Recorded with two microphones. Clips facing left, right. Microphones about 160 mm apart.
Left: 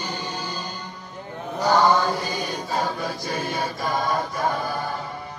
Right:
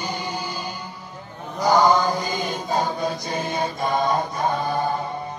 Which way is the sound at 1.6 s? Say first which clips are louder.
Right 2 dB; 15° right (ahead or behind).